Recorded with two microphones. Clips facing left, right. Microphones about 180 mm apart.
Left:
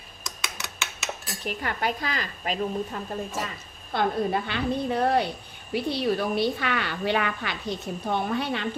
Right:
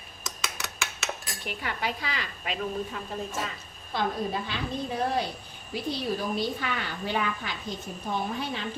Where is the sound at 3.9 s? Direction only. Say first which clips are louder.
Left 4 dB; 60° left (ahead or behind).